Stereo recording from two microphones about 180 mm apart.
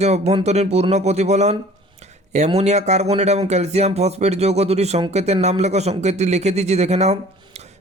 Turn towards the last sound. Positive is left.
turn(degrees=-40)  # may be behind; listen again after turning